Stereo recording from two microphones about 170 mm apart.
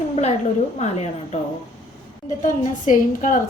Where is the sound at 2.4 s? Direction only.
50° left (ahead or behind).